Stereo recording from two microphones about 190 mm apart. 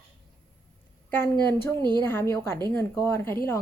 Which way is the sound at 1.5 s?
10° left (ahead or behind).